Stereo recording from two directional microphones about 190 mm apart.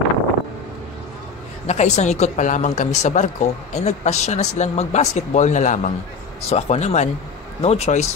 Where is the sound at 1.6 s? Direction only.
35° left (ahead or behind).